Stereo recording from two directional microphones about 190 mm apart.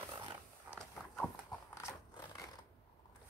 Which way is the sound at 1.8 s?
20° left (ahead or behind).